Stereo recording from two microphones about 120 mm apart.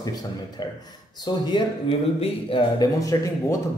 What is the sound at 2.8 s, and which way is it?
Speech, 30° left (ahead or behind).